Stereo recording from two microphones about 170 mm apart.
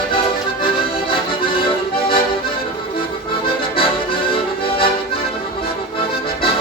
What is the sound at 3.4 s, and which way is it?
Accordion, 30° left (ahead or behind).